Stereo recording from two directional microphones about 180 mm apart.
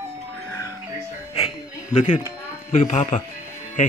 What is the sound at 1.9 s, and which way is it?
Speech, 40° left (ahead or behind).